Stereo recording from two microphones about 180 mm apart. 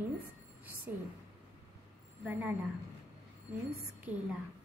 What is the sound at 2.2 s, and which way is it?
Speech, 10° right (ahead or behind).